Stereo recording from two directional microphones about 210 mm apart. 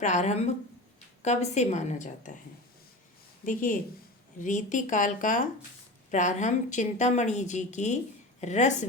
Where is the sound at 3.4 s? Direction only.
40° left (ahead or behind).